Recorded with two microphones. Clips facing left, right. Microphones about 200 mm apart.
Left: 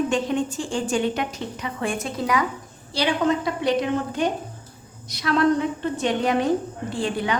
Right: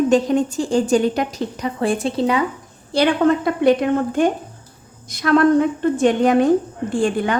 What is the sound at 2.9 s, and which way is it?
A woman's voice, 55° right (ahead or behind).